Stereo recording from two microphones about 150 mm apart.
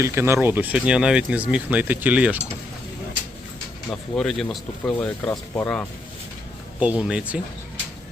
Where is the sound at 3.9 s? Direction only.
5° left (ahead or behind).